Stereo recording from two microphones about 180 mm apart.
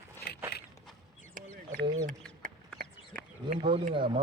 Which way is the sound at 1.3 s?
50° right (ahead or behind).